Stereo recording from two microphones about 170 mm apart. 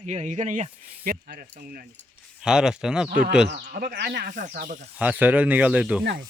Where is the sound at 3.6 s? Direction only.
45° right (ahead or behind).